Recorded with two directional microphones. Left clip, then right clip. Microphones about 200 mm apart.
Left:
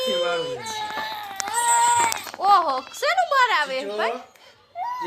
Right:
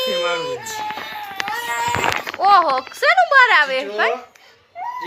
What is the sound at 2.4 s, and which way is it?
Speech, 5° right (ahead or behind).